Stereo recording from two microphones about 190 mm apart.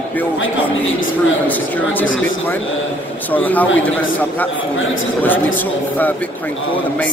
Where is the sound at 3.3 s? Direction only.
10° left (ahead or behind).